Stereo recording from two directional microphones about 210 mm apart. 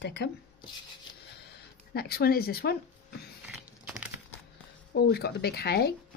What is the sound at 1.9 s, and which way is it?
Speech, 50° left (ahead or behind).